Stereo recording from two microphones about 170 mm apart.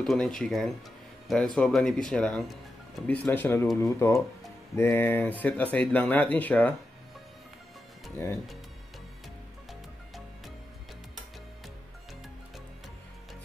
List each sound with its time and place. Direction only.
0.0 s speech: 5° left (ahead or behind)
9.7 s music: centre (ahead or behind)